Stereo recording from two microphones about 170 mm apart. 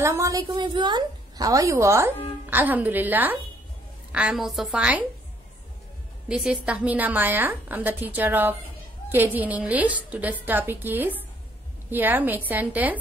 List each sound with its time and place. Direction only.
0.0 s a woman's voice: 20° right (ahead or behind)
6.2 s a woman's voice: 5° right (ahead or behind)